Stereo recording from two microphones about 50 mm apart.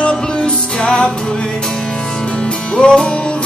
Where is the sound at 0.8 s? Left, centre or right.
Left.